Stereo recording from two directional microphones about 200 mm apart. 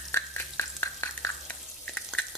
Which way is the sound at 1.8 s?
5° left (ahead or behind).